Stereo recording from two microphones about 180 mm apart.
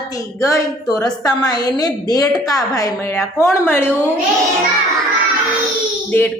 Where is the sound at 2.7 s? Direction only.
15° left (ahead or behind).